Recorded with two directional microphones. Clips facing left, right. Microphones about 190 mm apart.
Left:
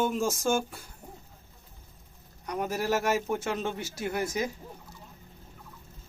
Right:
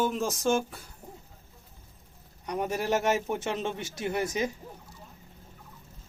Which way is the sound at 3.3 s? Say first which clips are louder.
Even; 25° right (ahead or behind).